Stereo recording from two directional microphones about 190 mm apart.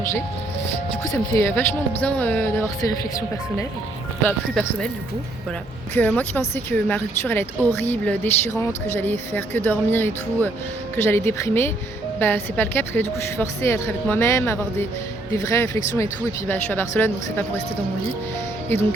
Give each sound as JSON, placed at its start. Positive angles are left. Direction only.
{"t": 1.0, "sound": "speech", "side_deg": 15}
{"t": 4.2, "sound": "speech", "side_deg": 5}
{"t": 5.9, "sound": "speech", "side_deg": 10}
{"t": 18.7, "sound": "speech", "side_deg": 10}